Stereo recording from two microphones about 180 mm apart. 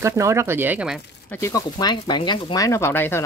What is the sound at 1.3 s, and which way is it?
Speech, 15° left (ahead or behind).